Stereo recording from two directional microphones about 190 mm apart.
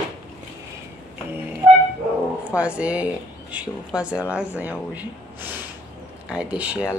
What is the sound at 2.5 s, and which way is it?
Speech, 5° right (ahead or behind).